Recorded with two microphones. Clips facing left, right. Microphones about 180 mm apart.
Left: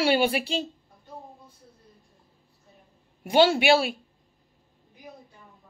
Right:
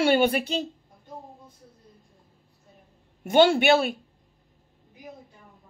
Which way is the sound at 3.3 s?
50° right (ahead or behind).